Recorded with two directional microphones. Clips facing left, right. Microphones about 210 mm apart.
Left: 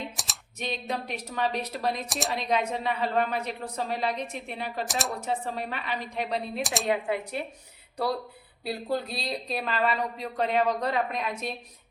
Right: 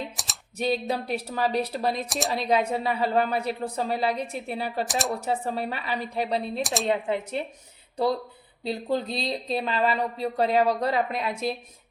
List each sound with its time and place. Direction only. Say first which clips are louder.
0.2 s computer keyboard: even; centre (ahead or behind)
0.6 s a woman's voice: right 6 dB; 35° right (ahead or behind)
2.0 s speech: right 3 dB; centre (ahead or behind)
2.3 s a woman's voice: right 4 dB; 35° right (ahead or behind)
4.9 s speech: right 3 dB; centre (ahead or behind)
5.2 s a woman's voice: right 3 dB; 35° right (ahead or behind)
6.6 s speech: right 3 dB; centre (ahead or behind)
6.9 s speech: right 2 dB; 25° right (ahead or behind)
8.9 s a woman's voice: right 3 dB; 25° right (ahead or behind)